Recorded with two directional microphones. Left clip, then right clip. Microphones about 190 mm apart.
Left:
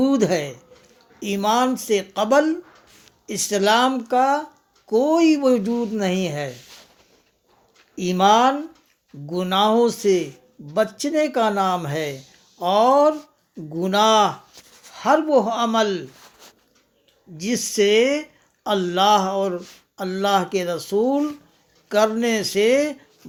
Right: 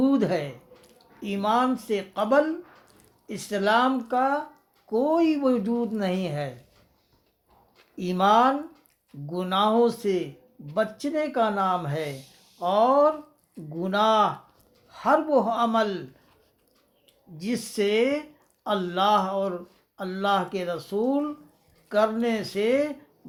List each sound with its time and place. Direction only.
0.0 s speech: 45° left (ahead or behind)
7.9 s speech: 45° left (ahead or behind)
17.3 s speech: 45° left (ahead or behind)